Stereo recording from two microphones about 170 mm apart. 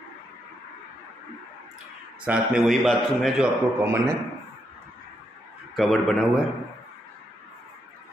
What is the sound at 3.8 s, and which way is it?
Speech, 15° right (ahead or behind).